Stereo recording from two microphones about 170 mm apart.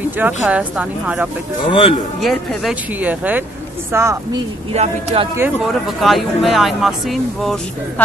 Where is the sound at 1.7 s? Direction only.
30° left (ahead or behind).